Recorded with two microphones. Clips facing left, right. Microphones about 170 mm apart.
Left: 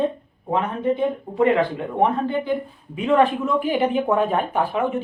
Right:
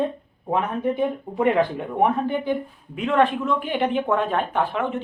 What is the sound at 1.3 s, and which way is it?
Speech, 15° right (ahead or behind).